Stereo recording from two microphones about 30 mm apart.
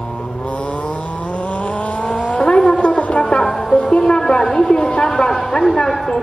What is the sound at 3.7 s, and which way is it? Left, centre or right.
Music, left.